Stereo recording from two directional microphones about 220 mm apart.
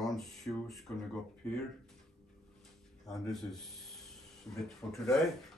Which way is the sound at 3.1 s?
Centre (ahead or behind).